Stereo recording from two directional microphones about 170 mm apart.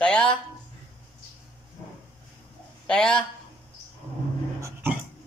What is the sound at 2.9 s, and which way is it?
Speech, 5° left (ahead or behind).